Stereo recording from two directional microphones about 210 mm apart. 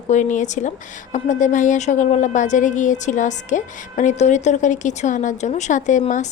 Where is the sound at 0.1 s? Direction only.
35° left (ahead or behind).